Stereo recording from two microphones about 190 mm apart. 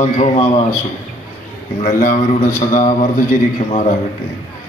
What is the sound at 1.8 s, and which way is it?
Speech, 45° left (ahead or behind).